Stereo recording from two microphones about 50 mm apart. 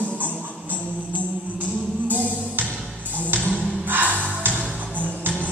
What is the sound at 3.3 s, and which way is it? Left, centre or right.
Music, right.